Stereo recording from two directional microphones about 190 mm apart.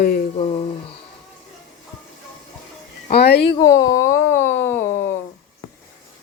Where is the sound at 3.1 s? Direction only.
60° left (ahead or behind).